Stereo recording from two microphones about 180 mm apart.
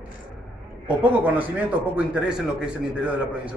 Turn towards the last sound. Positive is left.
turn(degrees=-5)  # may be behind; listen again after turning